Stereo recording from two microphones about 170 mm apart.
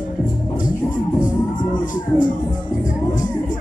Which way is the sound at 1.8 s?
50° left (ahead or behind).